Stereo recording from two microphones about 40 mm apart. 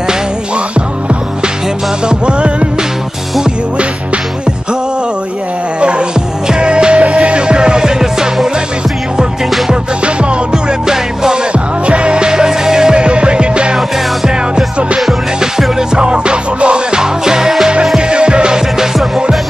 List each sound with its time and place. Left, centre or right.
0.7 s music: right
5.8 s music: right
10.5 s music: centre
11.5 s music: right